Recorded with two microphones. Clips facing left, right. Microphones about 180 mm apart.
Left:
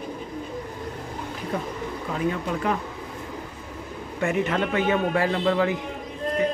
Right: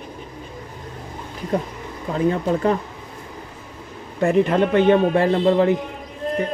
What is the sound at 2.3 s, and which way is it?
Speech, 35° right (ahead or behind).